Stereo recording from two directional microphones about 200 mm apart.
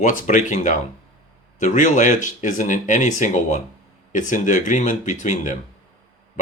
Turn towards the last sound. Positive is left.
turn(degrees=40)  # may be behind; listen again after turning